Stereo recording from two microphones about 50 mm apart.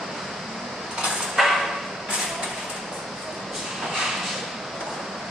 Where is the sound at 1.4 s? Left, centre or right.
Centre.